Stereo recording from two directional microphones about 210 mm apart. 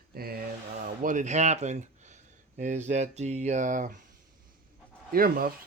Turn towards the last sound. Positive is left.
turn(degrees=-45)  # may be behind; listen again after turning